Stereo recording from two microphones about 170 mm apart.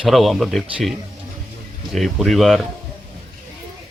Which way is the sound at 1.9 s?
Centre (ahead or behind).